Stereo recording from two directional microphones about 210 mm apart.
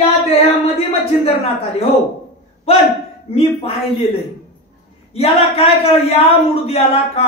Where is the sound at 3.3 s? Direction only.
30° left (ahead or behind).